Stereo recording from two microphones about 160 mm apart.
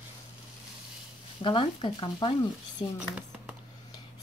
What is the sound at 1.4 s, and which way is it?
Speech, 30° left (ahead or behind).